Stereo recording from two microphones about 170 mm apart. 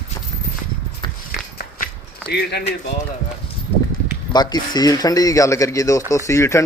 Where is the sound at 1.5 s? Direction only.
70° left (ahead or behind).